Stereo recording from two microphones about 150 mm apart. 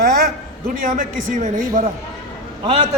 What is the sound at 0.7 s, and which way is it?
Speech, 60° right (ahead or behind).